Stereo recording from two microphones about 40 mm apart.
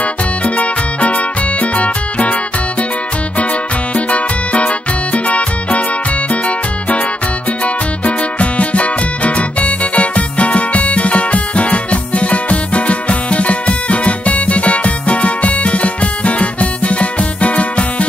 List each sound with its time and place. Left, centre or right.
0.0 s music: left
3.9 s music: left